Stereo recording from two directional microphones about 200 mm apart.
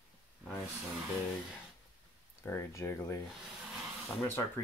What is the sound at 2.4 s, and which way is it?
Speech, 15° left (ahead or behind).